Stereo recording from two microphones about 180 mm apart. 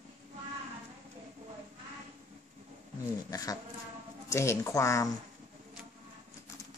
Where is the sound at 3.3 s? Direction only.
20° left (ahead or behind).